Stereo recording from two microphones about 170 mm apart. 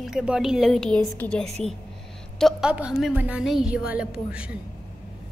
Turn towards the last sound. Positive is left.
turn(degrees=-5)  # may be behind; listen again after turning